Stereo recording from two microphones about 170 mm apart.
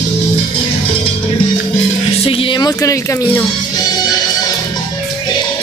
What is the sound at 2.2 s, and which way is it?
Music, 30° left (ahead or behind).